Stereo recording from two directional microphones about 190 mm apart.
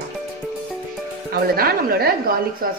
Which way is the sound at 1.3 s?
55° right (ahead or behind).